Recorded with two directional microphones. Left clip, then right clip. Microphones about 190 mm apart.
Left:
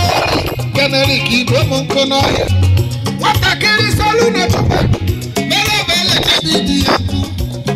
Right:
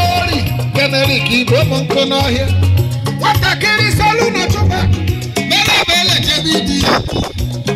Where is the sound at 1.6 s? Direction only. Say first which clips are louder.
Even; 70° left (ahead or behind).